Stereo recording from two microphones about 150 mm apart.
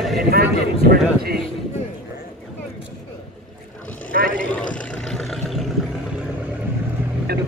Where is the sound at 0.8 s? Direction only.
90° right.